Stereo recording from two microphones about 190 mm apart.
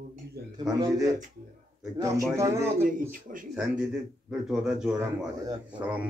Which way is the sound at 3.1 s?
45° right (ahead or behind).